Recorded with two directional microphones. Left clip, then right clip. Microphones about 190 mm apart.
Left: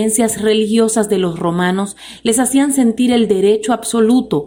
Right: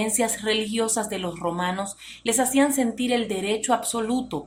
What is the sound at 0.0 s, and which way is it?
Speech, 35° left (ahead or behind).